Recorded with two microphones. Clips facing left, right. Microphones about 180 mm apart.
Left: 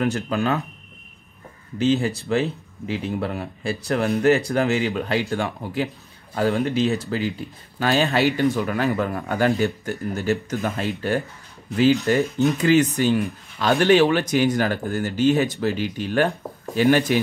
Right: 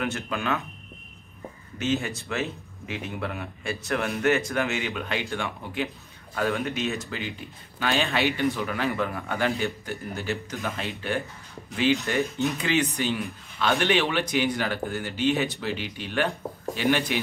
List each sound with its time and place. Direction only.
0.0 s speech: 35° left (ahead or behind)
1.8 s speech: 30° left (ahead or behind)